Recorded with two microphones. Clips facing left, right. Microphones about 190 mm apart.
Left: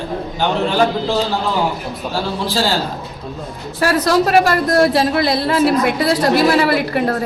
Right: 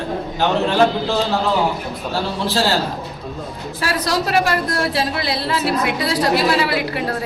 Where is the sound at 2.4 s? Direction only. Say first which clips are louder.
Right 1 dB; centre (ahead or behind).